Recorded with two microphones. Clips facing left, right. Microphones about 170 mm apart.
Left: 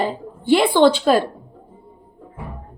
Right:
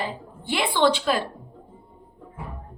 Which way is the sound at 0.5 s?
35° left (ahead or behind).